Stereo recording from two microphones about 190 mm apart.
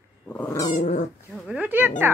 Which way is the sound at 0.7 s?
40° left (ahead or behind).